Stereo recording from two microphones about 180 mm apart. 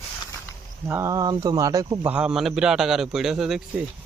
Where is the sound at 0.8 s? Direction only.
15° right (ahead or behind).